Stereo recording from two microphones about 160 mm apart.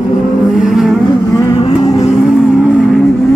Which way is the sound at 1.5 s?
40° left (ahead or behind).